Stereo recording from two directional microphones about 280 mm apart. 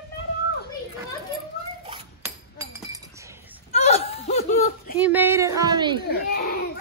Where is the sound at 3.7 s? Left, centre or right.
Left.